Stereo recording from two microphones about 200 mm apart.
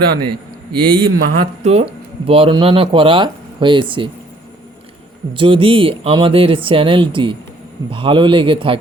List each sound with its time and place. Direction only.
0.2 s a man's voice: 20° right (ahead or behind)
5.3 s speech: 25° right (ahead or behind)